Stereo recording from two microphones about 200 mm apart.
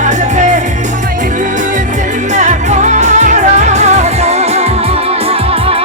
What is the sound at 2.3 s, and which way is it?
Music, 35° right (ahead or behind).